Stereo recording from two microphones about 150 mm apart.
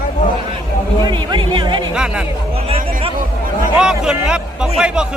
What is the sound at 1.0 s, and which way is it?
Speech, 30° right (ahead or behind).